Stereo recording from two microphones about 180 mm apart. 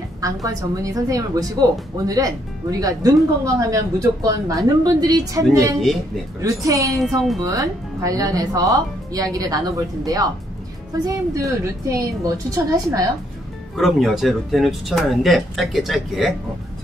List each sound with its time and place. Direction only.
0.2 s a woman's voice: 20° right (ahead or behind)
6.9 s speech: centre (ahead or behind)
7.4 s speech: 20° right (ahead or behind)
13.7 s speech: centre (ahead or behind)